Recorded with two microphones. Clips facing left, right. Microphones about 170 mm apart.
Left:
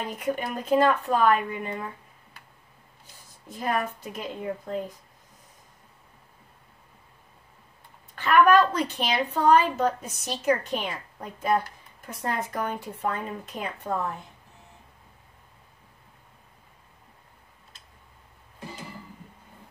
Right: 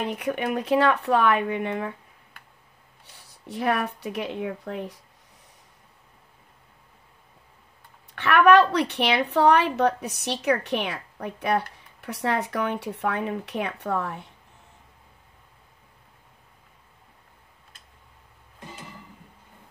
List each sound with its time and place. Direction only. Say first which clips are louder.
0.0 s a woman's voice: right 2 dB; 65° right (ahead or behind)
8.1 s a woman's voice: right 2 dB; 70° right (ahead or behind)